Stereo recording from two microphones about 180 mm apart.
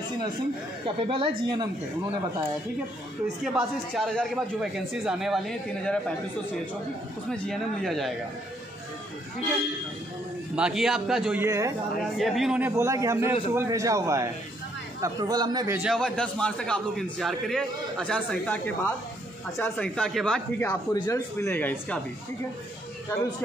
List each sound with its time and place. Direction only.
0.8 s speech: 30° right (ahead or behind)
3.4 s a man's voice: centre (ahead or behind)
7.2 s a man's voice: centre (ahead or behind)
10.5 s a man's voice: 5° right (ahead or behind)
11.4 s a man's voice: 15° right (ahead or behind)
12.2 s a man's voice: centre (ahead or behind); by 15.8 s 20° right (ahead or behind)
15.8 s a man's voice: centre (ahead or behind)
19.6 s a man's voice: 5° left (ahead or behind)
20.9 s speech: 20° left (ahead or behind)